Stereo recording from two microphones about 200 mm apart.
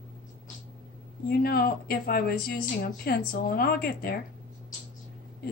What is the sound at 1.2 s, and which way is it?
Speech, 50° left (ahead or behind).